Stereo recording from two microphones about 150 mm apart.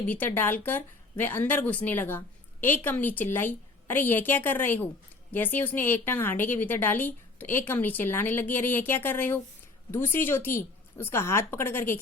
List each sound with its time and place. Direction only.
0.1 s speech: 15° left (ahead or behind)